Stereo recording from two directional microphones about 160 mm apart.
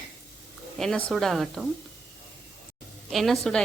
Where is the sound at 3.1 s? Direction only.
Centre (ahead or behind).